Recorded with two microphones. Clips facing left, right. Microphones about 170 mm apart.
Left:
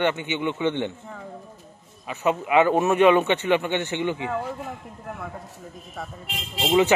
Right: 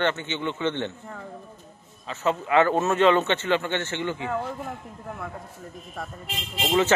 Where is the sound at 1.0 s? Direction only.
5° left (ahead or behind).